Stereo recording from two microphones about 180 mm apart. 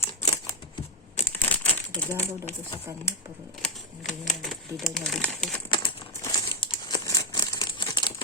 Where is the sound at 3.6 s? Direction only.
Centre (ahead or behind).